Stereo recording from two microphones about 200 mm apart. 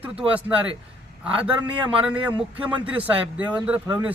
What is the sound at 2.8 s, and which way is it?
Speech, 5° right (ahead or behind).